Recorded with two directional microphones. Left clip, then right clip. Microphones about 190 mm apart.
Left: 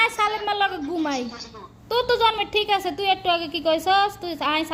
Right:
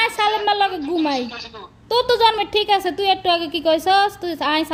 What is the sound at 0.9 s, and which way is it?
A woman's voice, 25° right (ahead or behind).